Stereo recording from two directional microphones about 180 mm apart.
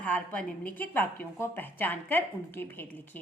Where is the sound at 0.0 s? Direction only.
10° left (ahead or behind).